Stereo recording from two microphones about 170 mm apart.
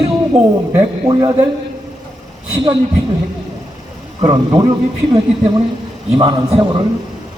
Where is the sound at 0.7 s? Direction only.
20° right (ahead or behind).